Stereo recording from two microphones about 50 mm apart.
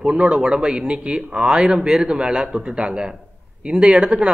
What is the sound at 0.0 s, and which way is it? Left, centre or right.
A man's voice, centre.